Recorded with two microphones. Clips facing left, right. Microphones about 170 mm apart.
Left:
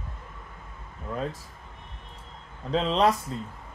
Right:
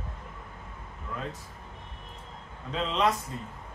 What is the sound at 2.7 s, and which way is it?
Speech, 35° left (ahead or behind).